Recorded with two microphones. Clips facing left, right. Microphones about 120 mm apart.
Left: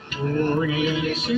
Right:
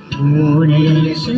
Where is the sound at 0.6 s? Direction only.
30° right (ahead or behind).